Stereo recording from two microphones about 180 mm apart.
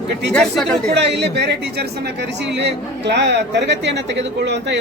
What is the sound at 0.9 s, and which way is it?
Speech, 70° right (ahead or behind).